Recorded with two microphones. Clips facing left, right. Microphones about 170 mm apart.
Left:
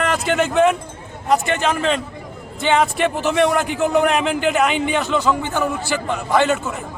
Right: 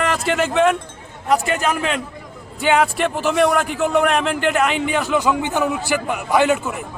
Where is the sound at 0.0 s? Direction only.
Centre (ahead or behind).